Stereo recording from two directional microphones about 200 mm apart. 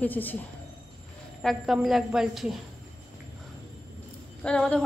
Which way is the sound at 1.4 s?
Centre (ahead or behind).